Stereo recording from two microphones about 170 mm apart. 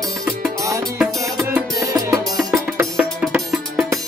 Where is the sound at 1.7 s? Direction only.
20° right (ahead or behind).